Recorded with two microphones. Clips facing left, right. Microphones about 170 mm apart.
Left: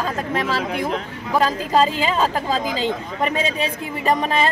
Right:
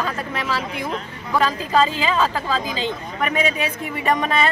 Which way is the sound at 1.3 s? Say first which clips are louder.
Left 1 dB; 35° left (ahead or behind).